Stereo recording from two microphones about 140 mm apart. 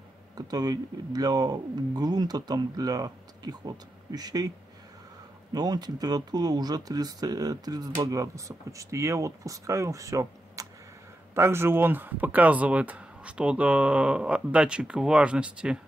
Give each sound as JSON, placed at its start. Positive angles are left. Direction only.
{"t": 0.4, "sound": "speech", "side_deg": -30}
{"t": 5.5, "sound": "speech", "side_deg": -30}